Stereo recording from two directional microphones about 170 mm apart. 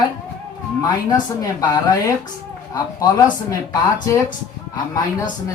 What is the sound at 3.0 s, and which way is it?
Speech, 20° left (ahead or behind).